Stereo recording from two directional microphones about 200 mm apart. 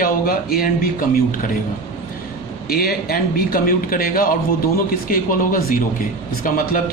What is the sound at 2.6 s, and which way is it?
Speech, 50° left (ahead or behind).